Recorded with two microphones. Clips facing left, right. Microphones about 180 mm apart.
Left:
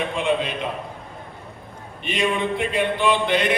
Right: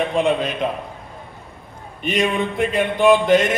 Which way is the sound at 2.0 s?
45° right (ahead or behind).